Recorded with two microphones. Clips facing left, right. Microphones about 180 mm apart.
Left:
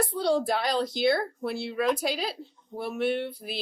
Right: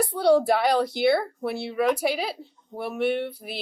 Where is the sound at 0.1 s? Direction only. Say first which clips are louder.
Right 6 dB; 60° right (ahead or behind).